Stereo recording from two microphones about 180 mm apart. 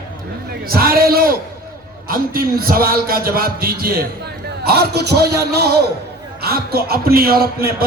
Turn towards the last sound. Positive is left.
turn(degrees=-55)  # may be behind; listen again after turning